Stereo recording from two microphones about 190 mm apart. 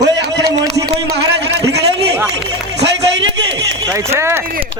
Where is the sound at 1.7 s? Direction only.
60° right (ahead or behind).